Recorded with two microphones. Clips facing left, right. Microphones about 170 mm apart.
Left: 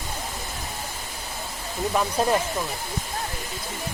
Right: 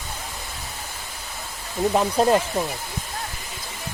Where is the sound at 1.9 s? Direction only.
25° right (ahead or behind).